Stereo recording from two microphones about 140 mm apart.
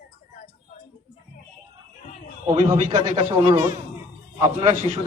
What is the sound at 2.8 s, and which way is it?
Speech, 40° right (ahead or behind).